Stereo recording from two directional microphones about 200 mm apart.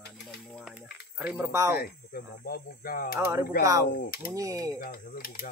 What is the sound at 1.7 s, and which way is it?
Speech, 50° left (ahead or behind).